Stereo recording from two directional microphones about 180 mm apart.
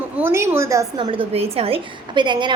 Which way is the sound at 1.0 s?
30° right (ahead or behind).